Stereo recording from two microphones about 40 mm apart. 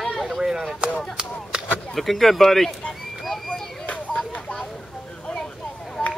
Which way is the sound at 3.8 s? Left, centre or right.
Left.